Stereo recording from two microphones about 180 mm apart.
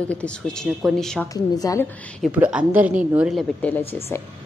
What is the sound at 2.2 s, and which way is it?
A woman's voice, 5° right (ahead or behind).